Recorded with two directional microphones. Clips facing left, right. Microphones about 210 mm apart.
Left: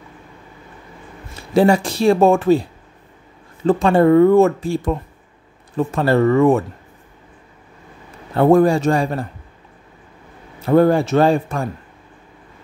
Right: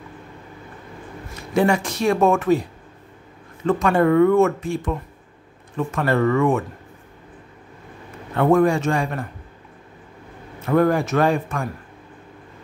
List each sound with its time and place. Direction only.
1.5 s speech: 30° left (ahead or behind)
3.6 s speech: 30° left (ahead or behind)
8.4 s speech: 35° left (ahead or behind)
10.6 s a man's voice: 30° left (ahead or behind)